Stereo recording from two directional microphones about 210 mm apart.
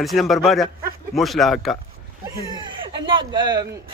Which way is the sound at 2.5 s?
20° right (ahead or behind).